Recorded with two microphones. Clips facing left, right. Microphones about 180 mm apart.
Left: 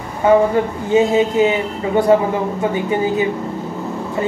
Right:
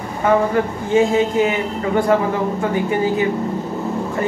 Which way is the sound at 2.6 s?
20° left (ahead or behind).